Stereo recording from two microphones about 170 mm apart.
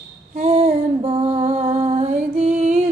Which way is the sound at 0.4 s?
35° right (ahead or behind).